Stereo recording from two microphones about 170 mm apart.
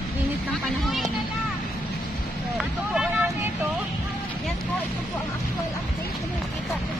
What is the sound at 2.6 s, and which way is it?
Vehicle, 5° right (ahead or behind).